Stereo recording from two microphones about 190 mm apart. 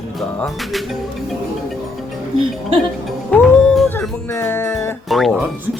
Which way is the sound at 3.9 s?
10° left (ahead or behind).